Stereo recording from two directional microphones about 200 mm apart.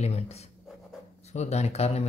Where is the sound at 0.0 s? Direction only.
30° left (ahead or behind).